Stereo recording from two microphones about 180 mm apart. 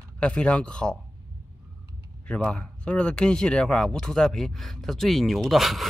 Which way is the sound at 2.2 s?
5° left (ahead or behind).